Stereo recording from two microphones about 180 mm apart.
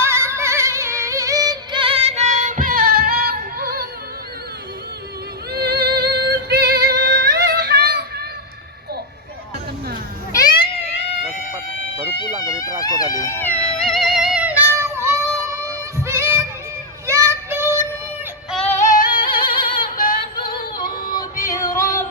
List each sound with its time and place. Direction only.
0.0 s music: 15° right (ahead or behind); by 3.8 s 55° right (ahead or behind)
5.5 s female singing: 60° right (ahead or behind)
10.3 s cat: 20° left (ahead or behind)
11.9 s a sound: 25° left (ahead or behind)
12.8 s music: 20° left (ahead or behind); by 16.4 s 15° right (ahead or behind)
17.1 s child singing: 15° right (ahead or behind)
18.5 s synthetic singing: 10° left (ahead or behind)
18.8 s music: 45° left (ahead or behind)
19.1 s music: 25° left (ahead or behind)
19.8 s yodeling: 50° left (ahead or behind)
20.3 s yodeling: 25° left (ahead or behind)
21.1 s music: 20° left (ahead or behind)